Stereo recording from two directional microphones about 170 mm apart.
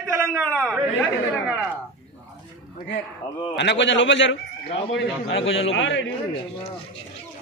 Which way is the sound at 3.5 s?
90° left.